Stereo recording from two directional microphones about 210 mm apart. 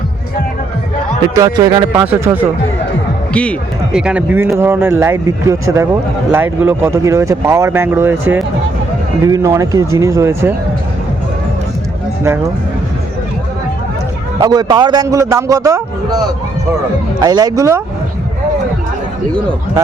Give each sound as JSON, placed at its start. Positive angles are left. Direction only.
{"t": 1.4, "sound": "speech", "side_deg": -20}
{"t": 2.0, "sound": "speech", "side_deg": -10}
{"t": 3.9, "sound": "speech", "side_deg": -5}
{"t": 14.3, "sound": "speech", "side_deg": -20}